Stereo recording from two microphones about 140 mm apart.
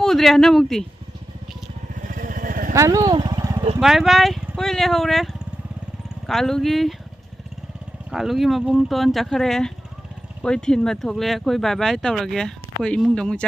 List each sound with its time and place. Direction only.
0.0 s speech: centre (ahead or behind)
2.0 s vehicle: 80° right
2.7 s speech: 25° right (ahead or behind)
3.2 s a sound: 25° right (ahead or behind)
3.8 s speech: centre (ahead or behind)
8.1 s speech: centre (ahead or behind)